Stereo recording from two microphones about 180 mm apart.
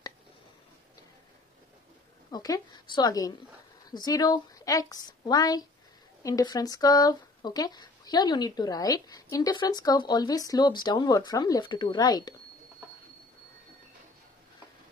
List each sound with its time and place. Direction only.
2.3 s speech: 20° left (ahead or behind)